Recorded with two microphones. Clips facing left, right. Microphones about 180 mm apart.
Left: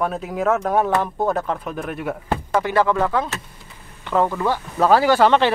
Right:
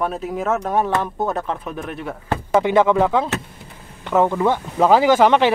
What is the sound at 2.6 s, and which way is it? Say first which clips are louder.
Speech: right 3 dB; 20° right (ahead or behind).